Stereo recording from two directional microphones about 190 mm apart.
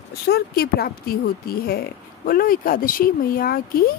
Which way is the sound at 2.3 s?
50° left (ahead or behind).